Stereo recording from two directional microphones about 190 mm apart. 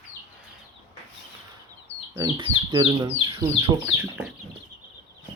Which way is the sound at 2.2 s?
20° right (ahead or behind).